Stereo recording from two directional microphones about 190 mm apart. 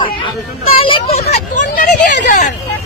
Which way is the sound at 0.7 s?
25° left (ahead or behind).